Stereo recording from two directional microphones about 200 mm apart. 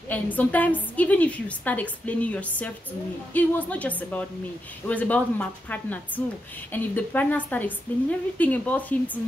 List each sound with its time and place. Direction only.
0.1 s a woman's voice: 10° left (ahead or behind)